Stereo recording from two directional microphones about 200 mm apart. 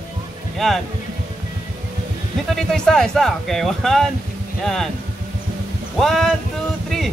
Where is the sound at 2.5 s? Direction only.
5° left (ahead or behind).